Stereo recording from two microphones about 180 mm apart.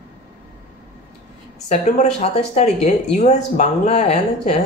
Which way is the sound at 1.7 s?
40° left (ahead or behind).